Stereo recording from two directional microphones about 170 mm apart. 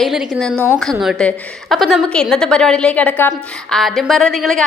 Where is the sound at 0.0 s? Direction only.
Centre (ahead or behind).